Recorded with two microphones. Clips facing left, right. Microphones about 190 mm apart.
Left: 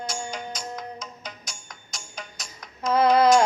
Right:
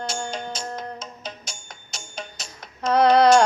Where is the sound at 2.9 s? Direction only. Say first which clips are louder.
Right 2 dB; 70° right (ahead or behind).